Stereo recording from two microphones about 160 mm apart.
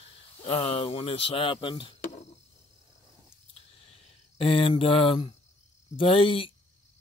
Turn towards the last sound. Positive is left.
turn(degrees=35)  # may be behind; listen again after turning